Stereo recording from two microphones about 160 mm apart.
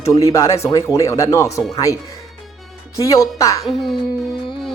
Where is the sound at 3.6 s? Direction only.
Centre (ahead or behind).